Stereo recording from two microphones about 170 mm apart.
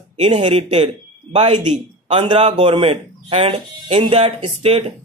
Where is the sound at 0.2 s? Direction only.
30° right (ahead or behind).